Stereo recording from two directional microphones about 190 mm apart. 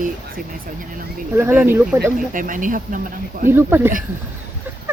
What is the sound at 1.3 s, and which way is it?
Speech, 10° right (ahead or behind).